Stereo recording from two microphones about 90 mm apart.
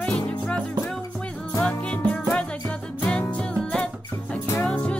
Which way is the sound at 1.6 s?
15° left (ahead or behind).